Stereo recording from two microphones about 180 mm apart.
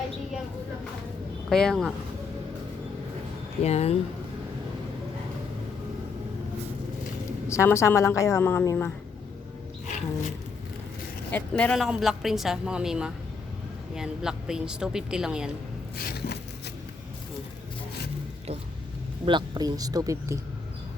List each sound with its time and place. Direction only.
1.5 s speech: 5° left (ahead or behind)
3.6 s speech: 35° left (ahead or behind)
7.4 s a woman's voice: 15° left (ahead or behind)
11.3 s speech: 10° left (ahead or behind)
16.0 s a sound: 60° left (ahead or behind)
19.2 s speech: 25° right (ahead or behind)